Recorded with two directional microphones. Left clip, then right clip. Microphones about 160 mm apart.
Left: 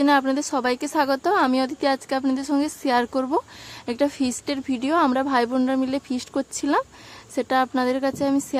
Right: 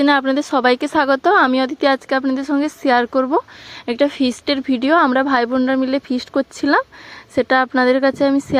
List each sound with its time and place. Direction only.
0.0 s speech: 20° right (ahead or behind)